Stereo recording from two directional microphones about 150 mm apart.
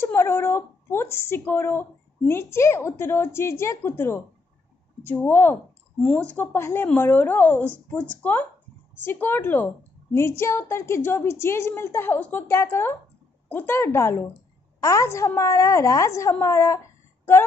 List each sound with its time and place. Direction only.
0.0 s a woman's voice: 15° left (ahead or behind)